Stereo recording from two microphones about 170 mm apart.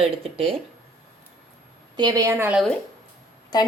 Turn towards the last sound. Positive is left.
turn(degrees=25)  # may be behind; listen again after turning